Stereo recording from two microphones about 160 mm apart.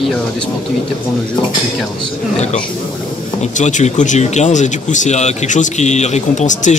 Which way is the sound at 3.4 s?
50° left (ahead or behind).